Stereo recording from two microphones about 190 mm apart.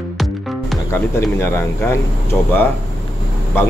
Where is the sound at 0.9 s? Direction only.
15° left (ahead or behind).